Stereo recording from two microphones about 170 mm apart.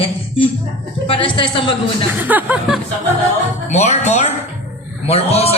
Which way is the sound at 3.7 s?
40° left (ahead or behind).